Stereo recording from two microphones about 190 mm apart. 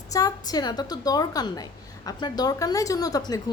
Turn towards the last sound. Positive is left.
turn(degrees=20)  # may be behind; listen again after turning